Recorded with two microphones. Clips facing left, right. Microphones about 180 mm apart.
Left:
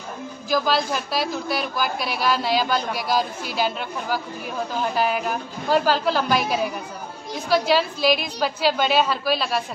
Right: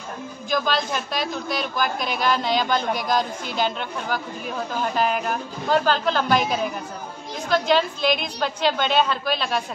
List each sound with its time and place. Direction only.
0.5 s a woman's voice: 5° left (ahead or behind)